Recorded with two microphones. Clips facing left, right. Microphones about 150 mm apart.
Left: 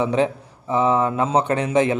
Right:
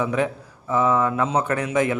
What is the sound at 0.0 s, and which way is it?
Speech, 25° left (ahead or behind).